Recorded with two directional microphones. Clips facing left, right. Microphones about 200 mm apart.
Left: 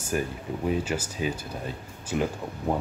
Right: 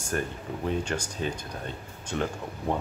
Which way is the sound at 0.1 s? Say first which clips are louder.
Left 2 dB; 5° left (ahead or behind).